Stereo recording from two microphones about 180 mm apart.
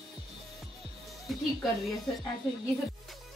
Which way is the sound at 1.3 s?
Centre (ahead or behind).